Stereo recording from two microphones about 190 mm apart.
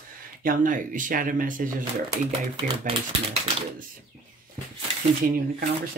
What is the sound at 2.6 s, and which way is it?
Speech, 30° right (ahead or behind).